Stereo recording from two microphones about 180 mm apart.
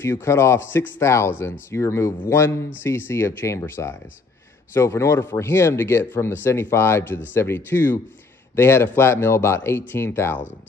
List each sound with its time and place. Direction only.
0.0 s speech: 15° left (ahead or behind)